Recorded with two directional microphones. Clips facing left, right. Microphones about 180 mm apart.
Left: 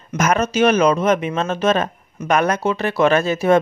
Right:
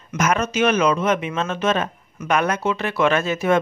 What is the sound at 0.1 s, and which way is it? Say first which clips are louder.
Speech: left 3 dB; 40° left (ahead or behind).